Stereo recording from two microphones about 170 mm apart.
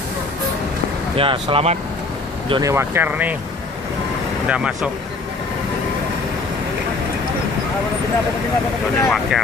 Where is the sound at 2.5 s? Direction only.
20° right (ahead or behind).